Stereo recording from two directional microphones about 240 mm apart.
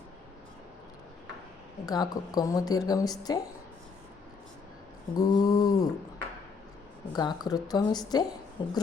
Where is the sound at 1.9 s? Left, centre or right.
Centre.